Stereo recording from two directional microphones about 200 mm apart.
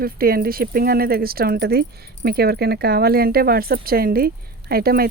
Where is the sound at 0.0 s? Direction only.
50° right (ahead or behind).